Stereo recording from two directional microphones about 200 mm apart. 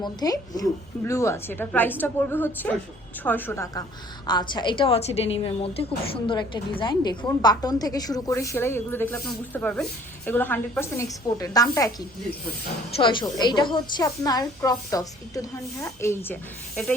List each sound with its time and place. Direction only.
0.0 s a woman's voice: 20° left (ahead or behind)
13.0 s a woman's voice: 25° left (ahead or behind); by 16.9 s 5° left (ahead or behind)